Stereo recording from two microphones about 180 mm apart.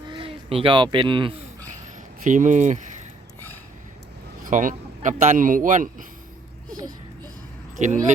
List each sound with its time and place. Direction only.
0.1 s speech: 30° right (ahead or behind)
2.2 s speech: 45° right (ahead or behind)
4.4 s speech: 45° right (ahead or behind)
6.7 s a child's voice: 20° right (ahead or behind)
7.8 s speech: 40° right (ahead or behind)